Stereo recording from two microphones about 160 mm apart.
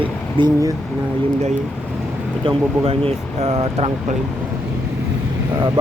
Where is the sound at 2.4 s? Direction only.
35° right (ahead or behind).